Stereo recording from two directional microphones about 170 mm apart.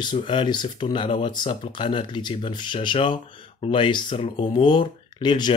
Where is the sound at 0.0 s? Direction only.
30° left (ahead or behind).